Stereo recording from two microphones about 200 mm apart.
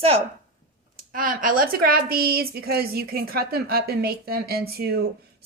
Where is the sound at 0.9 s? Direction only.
45° right (ahead or behind).